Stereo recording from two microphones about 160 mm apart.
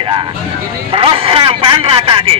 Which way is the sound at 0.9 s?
35° right (ahead or behind).